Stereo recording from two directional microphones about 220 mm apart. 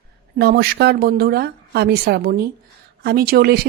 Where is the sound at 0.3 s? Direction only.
45° right (ahead or behind).